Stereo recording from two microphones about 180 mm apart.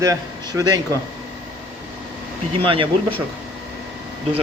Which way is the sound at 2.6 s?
30° right (ahead or behind).